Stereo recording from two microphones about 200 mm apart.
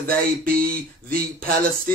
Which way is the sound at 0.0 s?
45° right (ahead or behind).